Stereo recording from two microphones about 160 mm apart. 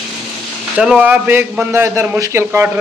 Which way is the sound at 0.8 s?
5° right (ahead or behind).